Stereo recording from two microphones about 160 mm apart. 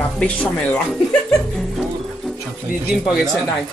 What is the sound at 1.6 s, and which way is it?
Music, centre (ahead or behind).